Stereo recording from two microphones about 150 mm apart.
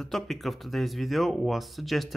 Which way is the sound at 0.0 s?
Centre (ahead or behind).